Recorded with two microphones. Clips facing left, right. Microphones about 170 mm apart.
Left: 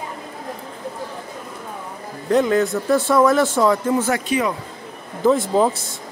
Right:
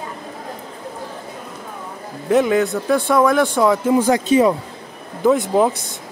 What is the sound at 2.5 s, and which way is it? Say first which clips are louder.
Speech: right 1 dB; centre (ahead or behind).